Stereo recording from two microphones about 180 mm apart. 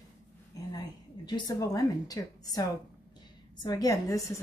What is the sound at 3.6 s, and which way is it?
Speech, 20° left (ahead or behind).